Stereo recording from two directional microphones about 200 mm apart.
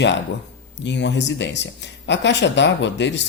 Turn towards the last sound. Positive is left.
turn(degrees=60)  # may be behind; listen again after turning